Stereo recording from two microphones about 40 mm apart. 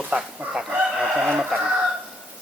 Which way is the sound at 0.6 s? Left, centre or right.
Centre.